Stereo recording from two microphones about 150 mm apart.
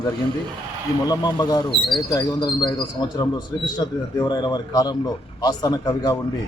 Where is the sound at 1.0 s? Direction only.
25° left (ahead or behind).